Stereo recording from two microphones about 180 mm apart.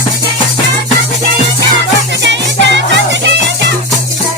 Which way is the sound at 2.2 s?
80° right.